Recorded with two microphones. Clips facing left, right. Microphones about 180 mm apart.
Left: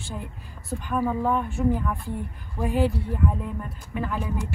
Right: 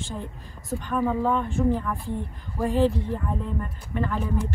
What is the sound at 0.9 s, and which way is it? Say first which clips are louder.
Speech: even; 10° left (ahead or behind).